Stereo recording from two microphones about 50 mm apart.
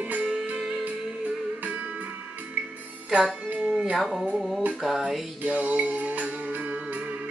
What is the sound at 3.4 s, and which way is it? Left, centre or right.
Music, right.